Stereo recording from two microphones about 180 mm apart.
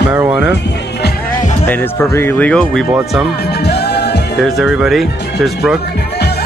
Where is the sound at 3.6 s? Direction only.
65° left (ahead or behind).